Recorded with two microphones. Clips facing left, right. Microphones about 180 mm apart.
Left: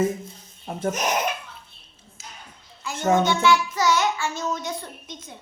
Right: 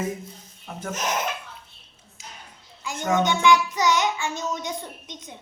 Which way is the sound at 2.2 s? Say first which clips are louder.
Even; 15° right (ahead or behind).